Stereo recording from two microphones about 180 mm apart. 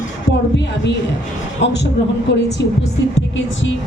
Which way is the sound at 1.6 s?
70° left (ahead or behind).